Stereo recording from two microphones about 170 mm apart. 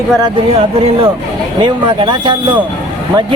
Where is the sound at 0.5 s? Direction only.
35° right (ahead or behind).